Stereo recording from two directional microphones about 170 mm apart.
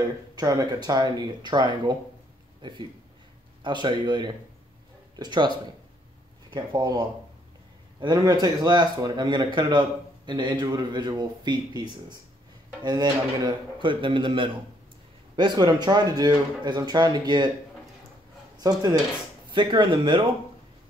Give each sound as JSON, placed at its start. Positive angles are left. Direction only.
{"t": 0.4, "sound": "speech", "side_deg": -25}
{"t": 6.5, "sound": "speech", "side_deg": -25}
{"t": 12.8, "sound": "speech", "side_deg": -25}
{"t": 18.6, "sound": "speech", "side_deg": -25}